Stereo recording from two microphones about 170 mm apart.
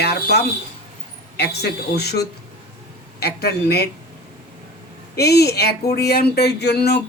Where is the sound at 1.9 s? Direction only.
70° left (ahead or behind).